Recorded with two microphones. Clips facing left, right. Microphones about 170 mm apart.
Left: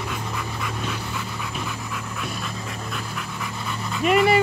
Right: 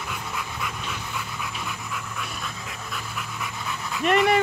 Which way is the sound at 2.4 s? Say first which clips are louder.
Left 4 dB; centre (ahead or behind).